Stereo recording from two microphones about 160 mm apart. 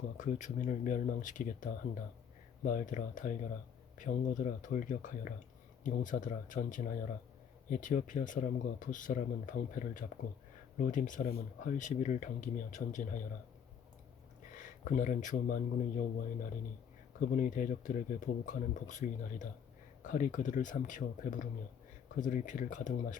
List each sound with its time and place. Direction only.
0.2 s speech: 50° left (ahead or behind)
14.5 s speech: 55° left (ahead or behind)